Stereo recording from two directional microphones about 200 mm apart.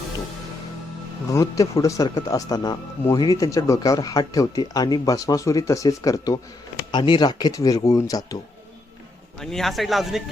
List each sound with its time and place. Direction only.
1.3 s speech: 15° left (ahead or behind)
9.4 s speech: centre (ahead or behind)